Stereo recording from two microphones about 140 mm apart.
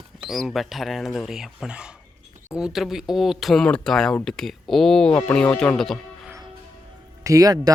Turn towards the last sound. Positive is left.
turn(degrees=-25)  # may be behind; listen again after turning